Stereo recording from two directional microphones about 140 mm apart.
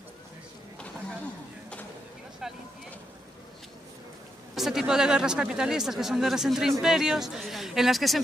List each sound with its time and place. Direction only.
2.4 s vehicle: 5° right (ahead or behind)
4.6 s speech: centre (ahead or behind)